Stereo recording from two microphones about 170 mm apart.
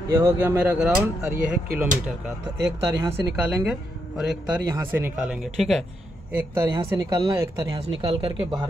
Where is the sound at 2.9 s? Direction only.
10° right (ahead or behind).